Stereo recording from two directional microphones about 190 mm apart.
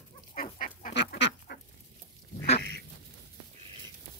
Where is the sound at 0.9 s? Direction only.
65° left (ahead or behind).